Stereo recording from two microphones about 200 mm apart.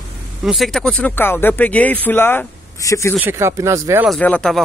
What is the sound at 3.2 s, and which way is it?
Speech, 10° right (ahead or behind).